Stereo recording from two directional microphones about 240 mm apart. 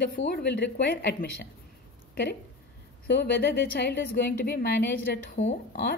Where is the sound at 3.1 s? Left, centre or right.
Left.